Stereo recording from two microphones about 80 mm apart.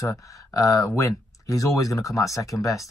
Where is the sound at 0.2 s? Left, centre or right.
Left.